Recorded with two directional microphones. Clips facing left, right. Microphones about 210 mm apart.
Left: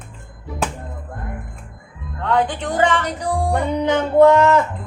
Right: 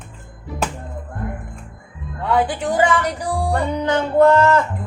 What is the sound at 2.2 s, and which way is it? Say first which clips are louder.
Speech: even; 10° right (ahead or behind).